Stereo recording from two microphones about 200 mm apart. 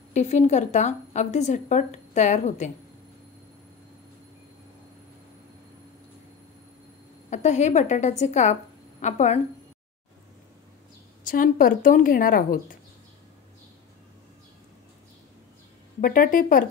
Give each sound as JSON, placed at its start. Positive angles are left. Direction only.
{"t": 0.1, "sound": "a woman's voice", "side_deg": 35}
{"t": 7.2, "sound": "a woman's voice", "side_deg": 35}
{"t": 11.2, "sound": "speech", "side_deg": 40}
{"t": 16.0, "sound": "speech", "side_deg": 45}